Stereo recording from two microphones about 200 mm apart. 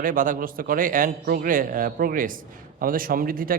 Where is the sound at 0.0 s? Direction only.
45° right (ahead or behind).